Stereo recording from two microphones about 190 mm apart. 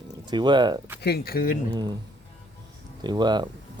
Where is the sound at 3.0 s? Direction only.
20° right (ahead or behind).